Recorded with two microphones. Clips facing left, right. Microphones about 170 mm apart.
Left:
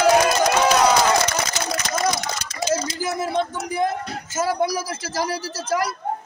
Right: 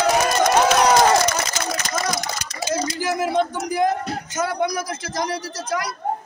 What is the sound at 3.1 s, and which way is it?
Speech, centre (ahead or behind).